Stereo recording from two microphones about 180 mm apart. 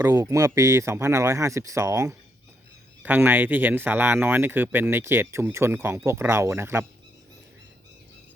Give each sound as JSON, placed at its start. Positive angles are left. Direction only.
{"t": 0.0, "sound": "speech", "side_deg": -15}